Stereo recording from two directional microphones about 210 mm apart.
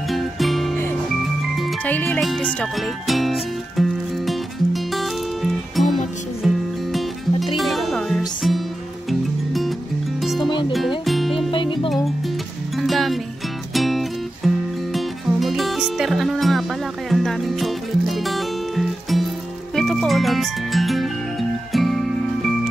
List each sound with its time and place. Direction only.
0.1 s music: centre (ahead or behind)
1.6 s speech: 5° left (ahead or behind)
4.3 s music: centre (ahead or behind)
11.5 s music: 25° left (ahead or behind)
12.7 s music: centre (ahead or behind)